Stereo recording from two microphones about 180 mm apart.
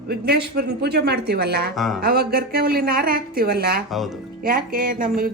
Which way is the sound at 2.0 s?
60° right (ahead or behind).